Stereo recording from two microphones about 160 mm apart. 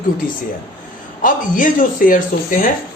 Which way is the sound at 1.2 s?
55° left (ahead or behind).